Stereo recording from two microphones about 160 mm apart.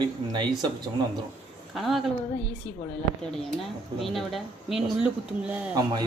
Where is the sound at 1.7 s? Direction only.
Centre (ahead or behind).